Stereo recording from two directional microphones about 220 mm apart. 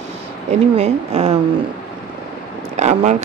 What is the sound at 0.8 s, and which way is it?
Speech, 30° right (ahead or behind).